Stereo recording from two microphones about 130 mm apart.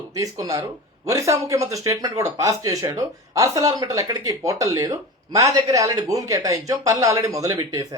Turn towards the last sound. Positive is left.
turn(degrees=-30)  # may be behind; listen again after turning